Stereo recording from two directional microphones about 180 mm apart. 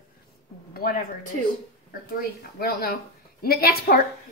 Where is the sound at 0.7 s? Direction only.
50° left (ahead or behind).